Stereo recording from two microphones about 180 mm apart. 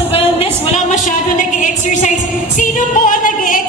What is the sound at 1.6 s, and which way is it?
Music, 45° left (ahead or behind).